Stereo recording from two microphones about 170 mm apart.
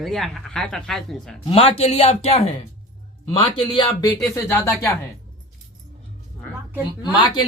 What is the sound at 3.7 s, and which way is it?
A woman's voice, 20° left (ahead or behind).